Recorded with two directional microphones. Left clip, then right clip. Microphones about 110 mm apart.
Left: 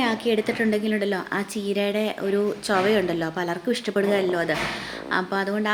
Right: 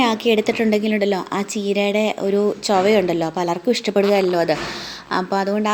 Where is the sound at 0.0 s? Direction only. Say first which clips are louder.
Right 6 dB; 60° right (ahead or behind).